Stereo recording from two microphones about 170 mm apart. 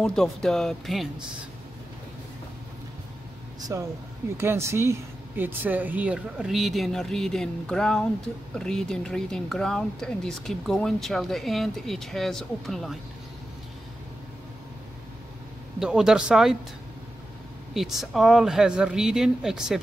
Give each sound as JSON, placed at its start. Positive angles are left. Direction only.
{"t": 0.0, "sound": "speech", "side_deg": 5}
{"t": 3.7, "sound": "speech", "side_deg": -20}
{"t": 15.8, "sound": "speech", "side_deg": -5}
{"t": 17.7, "sound": "speech", "side_deg": 0}